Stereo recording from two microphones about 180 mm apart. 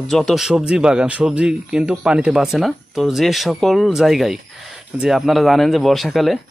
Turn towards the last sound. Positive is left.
turn(degrees=0)  # may be behind; listen again after turning